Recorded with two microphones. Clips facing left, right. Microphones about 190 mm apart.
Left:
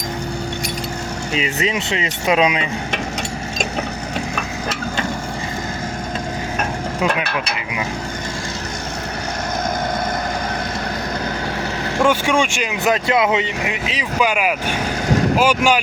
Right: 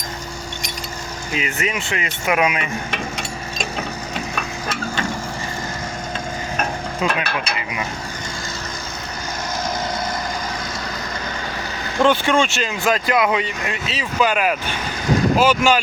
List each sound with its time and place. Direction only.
1.3 s speech: 20° left (ahead or behind)
11.9 s speech: 10° left (ahead or behind)